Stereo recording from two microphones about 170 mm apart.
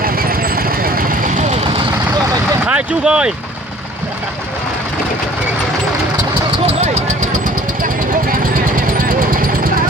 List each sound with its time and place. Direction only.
0.0 s vehicle: 60° right (ahead or behind); by 1.6 s 45° right (ahead or behind)
2.6 s speech: 5° right (ahead or behind)
6.6 s vehicle: 40° right (ahead or behind)
8.7 s vehicle: 55° right (ahead or behind)